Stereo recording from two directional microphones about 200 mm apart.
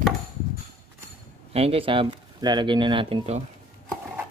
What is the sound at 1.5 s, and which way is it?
Speech, 30° right (ahead or behind).